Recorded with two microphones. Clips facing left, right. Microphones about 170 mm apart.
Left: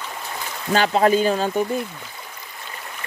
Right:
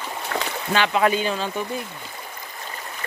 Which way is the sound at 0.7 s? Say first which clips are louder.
Left 3 dB; 40° left (ahead or behind).